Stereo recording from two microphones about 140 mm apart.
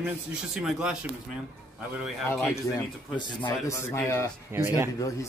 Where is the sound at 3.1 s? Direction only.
35° left (ahead or behind).